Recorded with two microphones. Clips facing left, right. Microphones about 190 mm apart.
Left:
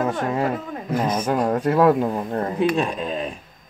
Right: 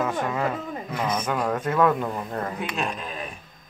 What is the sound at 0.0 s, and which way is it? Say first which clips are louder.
Speech: left 3 dB; 30° left (ahead or behind).